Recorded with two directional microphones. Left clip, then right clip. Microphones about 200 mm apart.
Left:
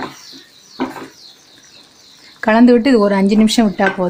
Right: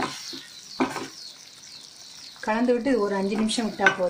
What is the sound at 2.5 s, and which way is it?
Speech, 50° left (ahead or behind).